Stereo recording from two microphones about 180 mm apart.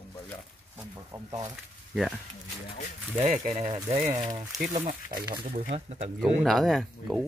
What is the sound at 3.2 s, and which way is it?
Speech, 40° right (ahead or behind).